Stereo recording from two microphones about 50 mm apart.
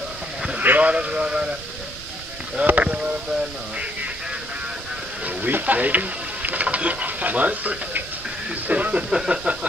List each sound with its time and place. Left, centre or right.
0.6 s speech: right
2.6 s speech: right
5.2 s speech: right
9.1 s a sound: centre